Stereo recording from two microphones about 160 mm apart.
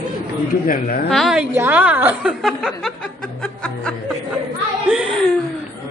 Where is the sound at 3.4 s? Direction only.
5° left (ahead or behind).